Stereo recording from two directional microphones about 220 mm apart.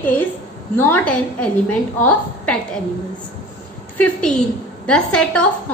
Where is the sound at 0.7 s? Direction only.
10° left (ahead or behind).